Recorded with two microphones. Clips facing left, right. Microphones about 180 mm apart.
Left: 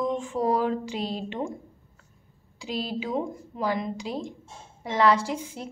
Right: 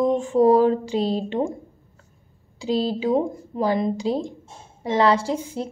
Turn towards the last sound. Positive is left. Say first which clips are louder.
# right 6 dB
turn(degrees=-30)  # may be behind; listen again after turning